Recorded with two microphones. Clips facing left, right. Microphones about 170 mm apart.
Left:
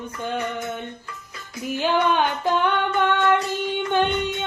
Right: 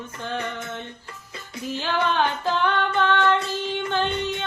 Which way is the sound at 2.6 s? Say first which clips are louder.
Left 1 dB; 15° left (ahead or behind).